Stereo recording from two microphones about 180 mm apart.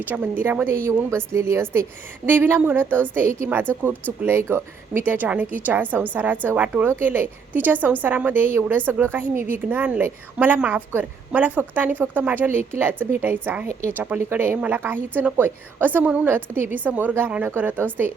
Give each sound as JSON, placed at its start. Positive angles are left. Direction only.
{"t": 0.1, "sound": "a woman's voice", "side_deg": -10}